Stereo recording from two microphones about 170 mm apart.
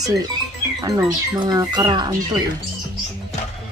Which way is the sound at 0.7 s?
20° right (ahead or behind).